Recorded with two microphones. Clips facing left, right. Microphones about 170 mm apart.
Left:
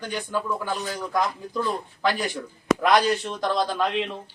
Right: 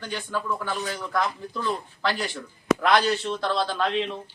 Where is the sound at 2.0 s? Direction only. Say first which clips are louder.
Left 4 dB; 15° left (ahead or behind).